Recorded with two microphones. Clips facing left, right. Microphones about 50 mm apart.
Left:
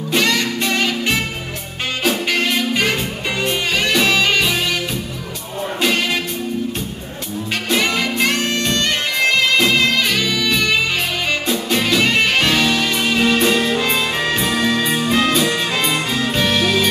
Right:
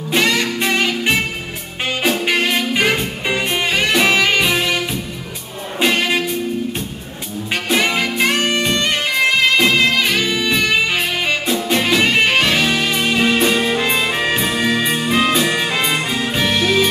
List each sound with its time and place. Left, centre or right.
0.1 s music: centre
5.8 s music: centre
7.7 s music: centre